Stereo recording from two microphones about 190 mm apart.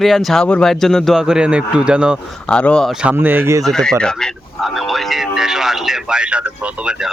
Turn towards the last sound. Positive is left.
turn(degrees=-5)  # may be behind; listen again after turning